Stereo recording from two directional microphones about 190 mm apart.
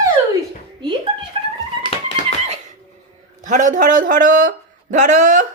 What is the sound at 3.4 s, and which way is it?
Speech, 40° right (ahead or behind).